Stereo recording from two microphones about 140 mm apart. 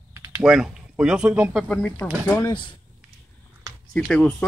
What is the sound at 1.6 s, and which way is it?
Speech, 10° left (ahead or behind).